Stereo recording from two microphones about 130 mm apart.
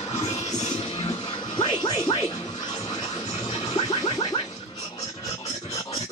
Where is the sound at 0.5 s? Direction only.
60° left (ahead or behind).